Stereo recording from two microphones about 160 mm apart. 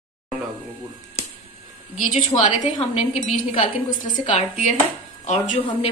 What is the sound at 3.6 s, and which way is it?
Speech, 35° left (ahead or behind).